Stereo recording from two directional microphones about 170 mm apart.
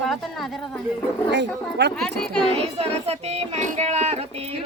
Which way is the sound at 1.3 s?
90° right.